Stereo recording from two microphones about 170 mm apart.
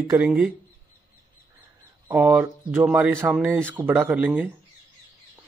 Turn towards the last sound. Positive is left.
turn(degrees=-10)  # may be behind; listen again after turning